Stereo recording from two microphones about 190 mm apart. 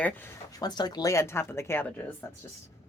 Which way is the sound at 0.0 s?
15° left (ahead or behind).